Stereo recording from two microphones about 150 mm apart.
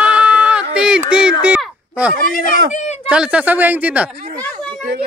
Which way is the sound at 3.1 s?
5° right (ahead or behind).